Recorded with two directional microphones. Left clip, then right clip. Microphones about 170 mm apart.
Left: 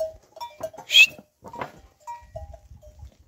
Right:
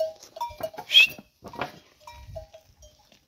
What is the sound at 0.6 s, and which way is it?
Goat, 15° left (ahead or behind).